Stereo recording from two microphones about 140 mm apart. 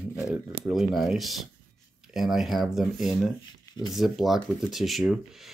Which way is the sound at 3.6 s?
30° left (ahead or behind).